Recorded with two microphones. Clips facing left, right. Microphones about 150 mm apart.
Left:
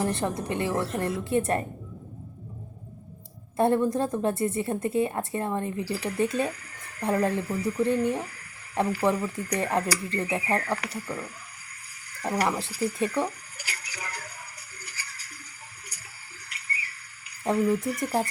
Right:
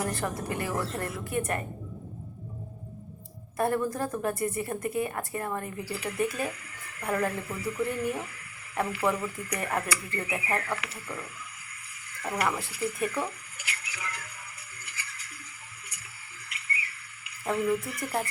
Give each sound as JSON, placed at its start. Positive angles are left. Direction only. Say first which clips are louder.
{"t": 0.0, "sound": "a woman's voice", "louder": "left 4 dB", "side_deg": 25}
{"t": 3.6, "sound": "a woman's voice", "louder": "left 5 dB", "side_deg": 25}
{"t": 14.8, "sound": "music", "louder": "even", "side_deg": 35}
{"t": 16.5, "sound": "bird", "louder": "right 1 dB", "side_deg": 35}
{"t": 17.8, "sound": "speech", "louder": "left 5 dB", "side_deg": 30}